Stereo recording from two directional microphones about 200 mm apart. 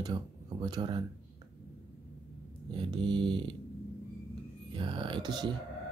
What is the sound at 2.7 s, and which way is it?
Speech, 25° right (ahead or behind).